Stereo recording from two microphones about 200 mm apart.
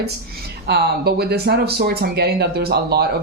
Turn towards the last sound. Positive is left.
turn(degrees=-55)  # may be behind; listen again after turning